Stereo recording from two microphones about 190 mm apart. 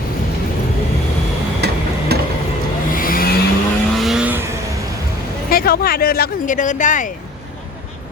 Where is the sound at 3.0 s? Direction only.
50° left (ahead or behind).